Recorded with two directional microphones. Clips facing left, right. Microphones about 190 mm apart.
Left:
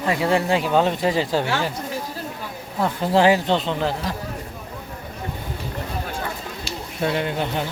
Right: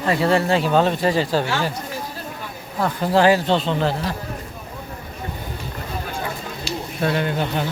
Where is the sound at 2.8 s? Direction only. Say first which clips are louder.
Right 1 dB; 20° left (ahead or behind).